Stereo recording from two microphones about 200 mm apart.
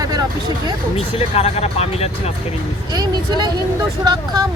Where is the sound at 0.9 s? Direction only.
30° left (ahead or behind).